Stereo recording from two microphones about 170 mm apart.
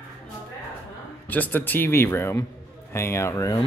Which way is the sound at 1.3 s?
10° left (ahead or behind).